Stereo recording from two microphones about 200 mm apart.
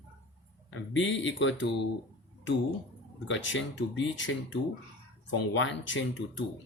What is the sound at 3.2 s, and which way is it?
Speech, 70° left (ahead or behind).